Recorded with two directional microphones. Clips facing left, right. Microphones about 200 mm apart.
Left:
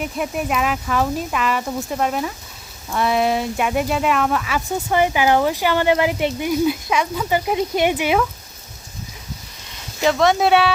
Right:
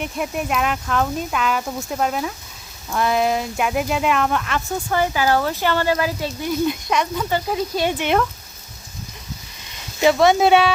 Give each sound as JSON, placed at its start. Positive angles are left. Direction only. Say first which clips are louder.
{"t": 0.0, "sound": "speech", "louder": "left 1 dB", "side_deg": 0}
{"t": 4.9, "sound": "speech", "louder": "left 2 dB", "side_deg": 15}
{"t": 7.9, "sound": "speech", "louder": "left 1 dB", "side_deg": 5}
{"t": 10.0, "sound": "speech", "louder": "right 2 dB", "side_deg": -5}